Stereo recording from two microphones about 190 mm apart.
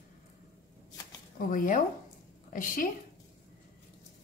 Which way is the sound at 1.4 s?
50° left (ahead or behind).